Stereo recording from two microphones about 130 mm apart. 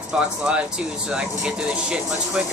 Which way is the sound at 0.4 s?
5° right (ahead or behind).